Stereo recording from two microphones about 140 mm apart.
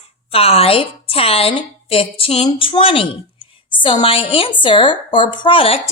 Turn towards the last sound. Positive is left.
turn(degrees=40)  # may be behind; listen again after turning